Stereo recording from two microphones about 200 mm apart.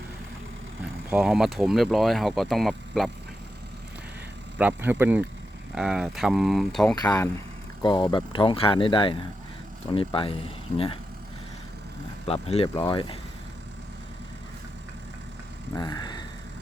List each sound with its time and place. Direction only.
1.1 s speech: centre (ahead or behind)
4.5 s speech: 10° right (ahead or behind)
6.9 s speech: 20° left (ahead or behind)
12.2 s speech: 30° left (ahead or behind)
15.7 s vehicle: 20° left (ahead or behind)